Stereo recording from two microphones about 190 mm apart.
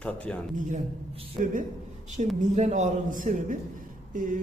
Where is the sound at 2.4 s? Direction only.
40° right (ahead or behind).